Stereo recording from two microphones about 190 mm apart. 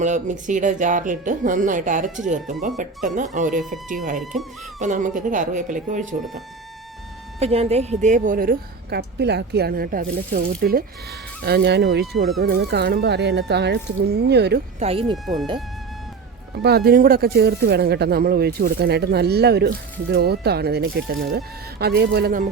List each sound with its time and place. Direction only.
0.0 s a woman's voice: 40° right (ahead or behind)
4.2 s speech: centre (ahead or behind)
4.8 s speech: 40° right (ahead or behind)
7.3 s a woman's voice: 35° right (ahead or behind); by 14.6 s 60° right (ahead or behind)
14.8 s speech: 30° right (ahead or behind)
15.1 s speech: centre (ahead or behind)
16.6 s speech: 55° right (ahead or behind); by 21.2 s 75° right (ahead or behind)
21.3 s speech: 55° right (ahead or behind)